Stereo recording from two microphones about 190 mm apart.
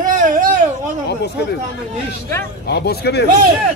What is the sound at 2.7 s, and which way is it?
Speech, 60° left (ahead or behind).